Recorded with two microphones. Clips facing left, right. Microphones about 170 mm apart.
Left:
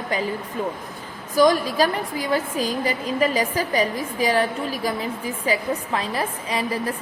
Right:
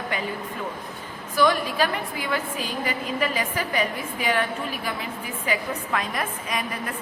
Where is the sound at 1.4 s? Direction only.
40° left (ahead or behind).